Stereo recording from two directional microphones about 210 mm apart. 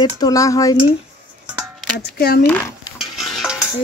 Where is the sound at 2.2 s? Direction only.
45° left (ahead or behind).